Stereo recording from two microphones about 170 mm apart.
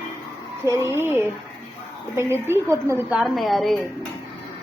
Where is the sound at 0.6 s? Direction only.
15° right (ahead or behind).